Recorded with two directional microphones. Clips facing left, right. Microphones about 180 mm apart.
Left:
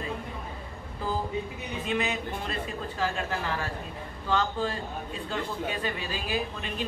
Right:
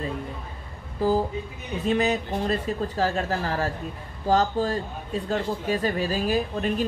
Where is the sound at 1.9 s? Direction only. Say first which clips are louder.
Right 7 dB; 40° right (ahead or behind).